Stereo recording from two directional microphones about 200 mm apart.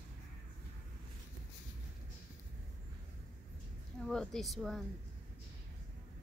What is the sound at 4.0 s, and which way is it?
Speech, 5° left (ahead or behind).